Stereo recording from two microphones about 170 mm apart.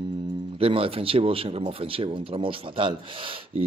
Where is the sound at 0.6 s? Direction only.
35° right (ahead or behind).